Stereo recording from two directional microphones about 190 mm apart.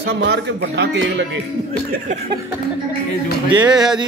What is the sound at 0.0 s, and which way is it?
A man's voice, 65° right (ahead or behind).